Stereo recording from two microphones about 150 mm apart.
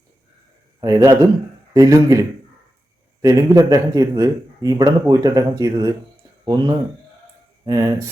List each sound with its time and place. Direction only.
0.8 s a man's voice: 20° right (ahead or behind)